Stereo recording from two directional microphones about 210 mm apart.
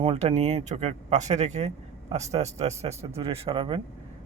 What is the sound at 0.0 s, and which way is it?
Speech, 30° right (ahead or behind).